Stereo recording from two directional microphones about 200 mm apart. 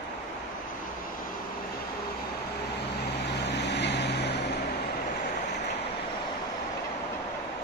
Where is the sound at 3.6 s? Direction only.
60° left (ahead or behind).